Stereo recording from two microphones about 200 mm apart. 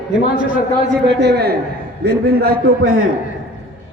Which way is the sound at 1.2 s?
55° right (ahead or behind).